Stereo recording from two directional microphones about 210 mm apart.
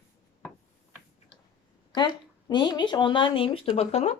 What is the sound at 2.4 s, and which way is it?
Speech, 20° left (ahead or behind).